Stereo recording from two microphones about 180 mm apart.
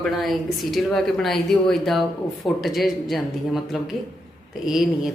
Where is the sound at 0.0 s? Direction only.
Centre (ahead or behind).